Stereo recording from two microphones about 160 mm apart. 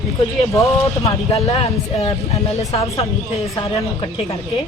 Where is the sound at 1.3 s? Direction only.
40° left (ahead or behind).